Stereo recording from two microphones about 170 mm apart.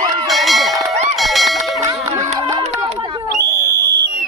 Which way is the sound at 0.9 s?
40° right (ahead or behind).